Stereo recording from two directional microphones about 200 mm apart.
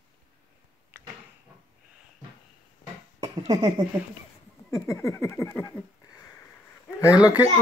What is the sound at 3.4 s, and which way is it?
Speech, 25° right (ahead or behind).